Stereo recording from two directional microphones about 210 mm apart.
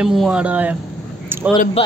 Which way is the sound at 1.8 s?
30° left (ahead or behind).